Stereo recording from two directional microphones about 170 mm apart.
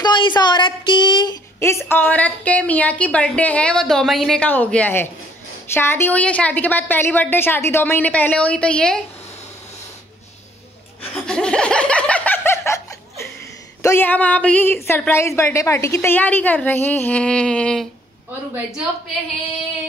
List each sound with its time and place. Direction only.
0.0 s a woman's voice: 25° left (ahead or behind)
1.6 s a woman's voice: 15° left (ahead or behind)
11.2 s laughter: 5° left (ahead or behind)
13.8 s a woman's voice: 10° left (ahead or behind)